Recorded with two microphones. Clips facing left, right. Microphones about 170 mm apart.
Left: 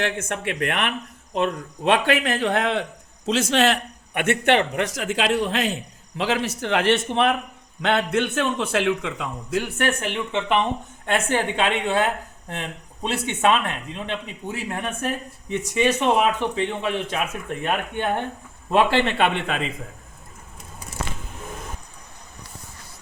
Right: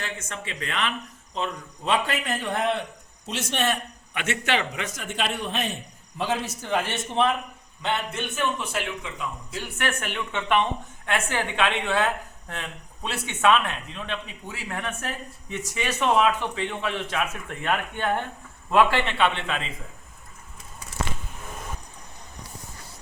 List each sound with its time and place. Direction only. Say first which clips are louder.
0.0 s a man's voice: left 9 dB; 65° left (ahead or behind); by 3.8 s 90° left
4.1 s a man's voice: left 7 dB; 55° left (ahead or behind); by 9.6 s 90° left
9.6 s speech: left 7 dB; 40° left (ahead or behind)
10.0 s a woman's voice: left 5 dB; 20° left (ahead or behind)
19.0 s a man's voice: left 3 dB; 45° left (ahead or behind)